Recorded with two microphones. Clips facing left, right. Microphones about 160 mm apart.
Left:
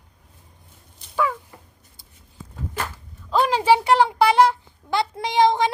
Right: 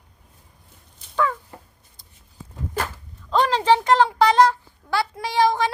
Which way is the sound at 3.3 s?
10° left (ahead or behind).